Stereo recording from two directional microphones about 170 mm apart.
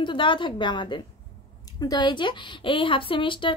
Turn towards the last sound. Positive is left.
turn(degrees=30)  # may be behind; listen again after turning